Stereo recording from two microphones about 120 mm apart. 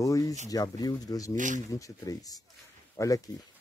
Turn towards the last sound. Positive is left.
turn(degrees=25)  # may be behind; listen again after turning